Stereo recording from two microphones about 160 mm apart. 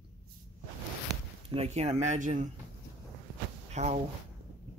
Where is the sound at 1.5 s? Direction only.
40° right (ahead or behind).